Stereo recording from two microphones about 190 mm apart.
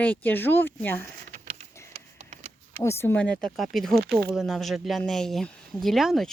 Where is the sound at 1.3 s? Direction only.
40° right (ahead or behind).